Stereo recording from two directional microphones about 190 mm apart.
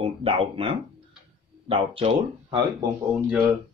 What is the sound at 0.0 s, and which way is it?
Speech, 30° right (ahead or behind).